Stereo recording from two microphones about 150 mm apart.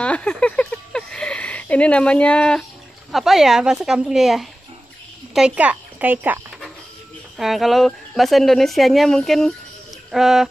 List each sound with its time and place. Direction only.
0.0 s a sound: 10° left (ahead or behind)
3.1 s speech: centre (ahead or behind)
7.3 s speech: centre (ahead or behind)